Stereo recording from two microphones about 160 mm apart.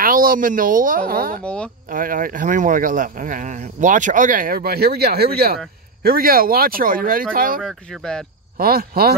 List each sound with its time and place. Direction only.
0.0 s speech: 65° right (ahead or behind)
1.4 s speech: 5° left (ahead or behind)
1.9 s speech: 60° right (ahead or behind)
7.6 s speech: 5° left (ahead or behind)
8.5 s speech: 70° right (ahead or behind)